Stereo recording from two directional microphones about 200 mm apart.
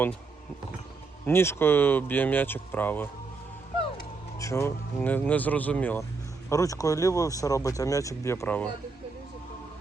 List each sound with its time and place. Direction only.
1.2 s speech: 10° left (ahead or behind)
4.4 s speech: 15° left (ahead or behind)